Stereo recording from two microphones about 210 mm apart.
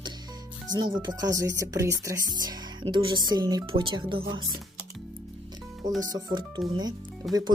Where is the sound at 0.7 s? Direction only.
20° right (ahead or behind).